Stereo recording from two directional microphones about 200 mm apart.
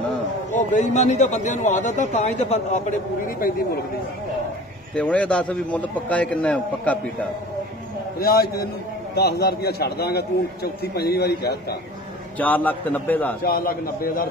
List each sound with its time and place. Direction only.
0.5 s speech: 35° left (ahead or behind)
4.9 s a man's voice: 5° left (ahead or behind)
8.2 s a man's voice: 50° left (ahead or behind)
12.4 s a man's voice: 10° left (ahead or behind)
13.4 s a man's voice: 45° left (ahead or behind)